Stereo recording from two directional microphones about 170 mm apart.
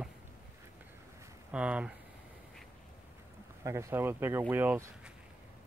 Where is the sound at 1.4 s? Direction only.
5° right (ahead or behind).